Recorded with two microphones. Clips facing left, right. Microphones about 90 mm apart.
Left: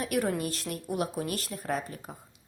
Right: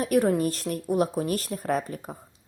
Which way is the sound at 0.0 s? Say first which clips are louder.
Right 7 dB; 35° right (ahead or behind).